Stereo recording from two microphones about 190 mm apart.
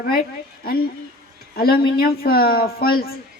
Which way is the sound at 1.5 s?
55° left (ahead or behind).